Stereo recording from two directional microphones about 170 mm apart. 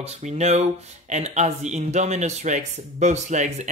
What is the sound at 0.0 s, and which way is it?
Speech, 40° right (ahead or behind).